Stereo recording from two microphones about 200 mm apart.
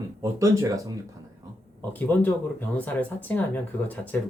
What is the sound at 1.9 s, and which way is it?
Speech, 10° left (ahead or behind).